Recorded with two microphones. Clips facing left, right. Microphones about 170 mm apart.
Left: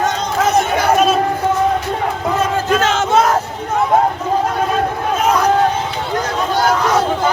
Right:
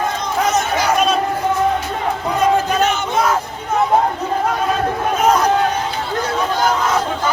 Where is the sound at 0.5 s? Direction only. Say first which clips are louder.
Left 3 dB; 55° left (ahead or behind).